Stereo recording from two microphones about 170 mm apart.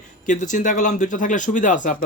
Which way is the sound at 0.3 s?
50° left (ahead or behind).